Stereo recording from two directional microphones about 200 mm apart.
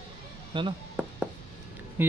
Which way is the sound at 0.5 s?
25° right (ahead or behind).